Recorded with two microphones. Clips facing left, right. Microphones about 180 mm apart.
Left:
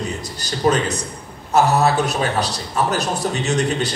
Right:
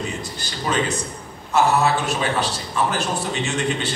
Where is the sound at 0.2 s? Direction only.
40° left (ahead or behind).